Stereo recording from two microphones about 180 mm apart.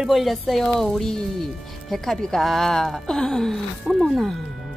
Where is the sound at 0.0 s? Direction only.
Centre (ahead or behind).